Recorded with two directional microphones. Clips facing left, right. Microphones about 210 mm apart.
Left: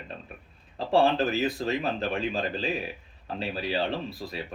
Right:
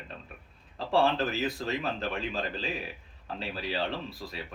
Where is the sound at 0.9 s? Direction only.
15° left (ahead or behind).